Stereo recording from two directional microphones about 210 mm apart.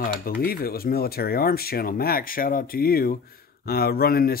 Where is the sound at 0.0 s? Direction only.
45° left (ahead or behind).